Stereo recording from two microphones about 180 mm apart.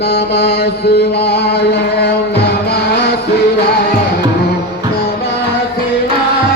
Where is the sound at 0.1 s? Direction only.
65° left (ahead or behind).